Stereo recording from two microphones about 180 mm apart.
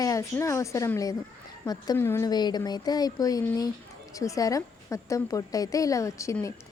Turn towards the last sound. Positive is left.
turn(degrees=15)  # may be behind; listen again after turning